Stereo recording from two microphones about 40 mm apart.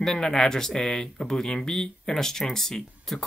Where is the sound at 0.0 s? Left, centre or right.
Centre.